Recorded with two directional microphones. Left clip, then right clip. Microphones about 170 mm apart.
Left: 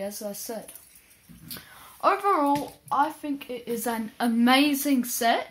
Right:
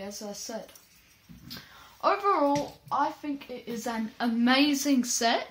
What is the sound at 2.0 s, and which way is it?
Speech, 50° left (ahead or behind).